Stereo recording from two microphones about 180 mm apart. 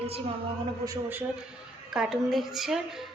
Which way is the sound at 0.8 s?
15° right (ahead or behind).